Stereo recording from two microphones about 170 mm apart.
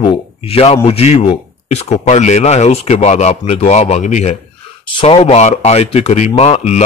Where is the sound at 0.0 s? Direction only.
35° left (ahead or behind).